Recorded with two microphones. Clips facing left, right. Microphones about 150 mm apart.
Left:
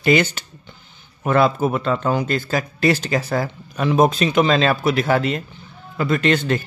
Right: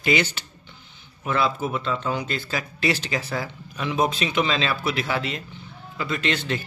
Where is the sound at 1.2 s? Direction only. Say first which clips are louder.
Left 7 dB; 50° left (ahead or behind).